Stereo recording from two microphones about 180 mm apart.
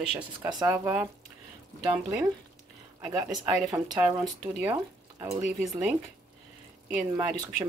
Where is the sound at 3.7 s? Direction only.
20° right (ahead or behind).